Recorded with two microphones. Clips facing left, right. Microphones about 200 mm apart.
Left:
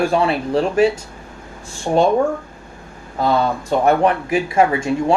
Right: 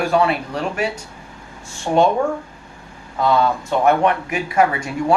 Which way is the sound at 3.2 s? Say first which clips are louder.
Even; 35° left (ahead or behind).